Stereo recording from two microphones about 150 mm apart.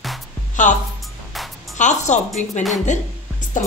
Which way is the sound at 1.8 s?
50° left (ahead or behind).